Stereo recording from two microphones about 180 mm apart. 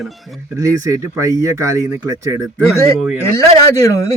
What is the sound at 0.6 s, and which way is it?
Speech, 15° right (ahead or behind).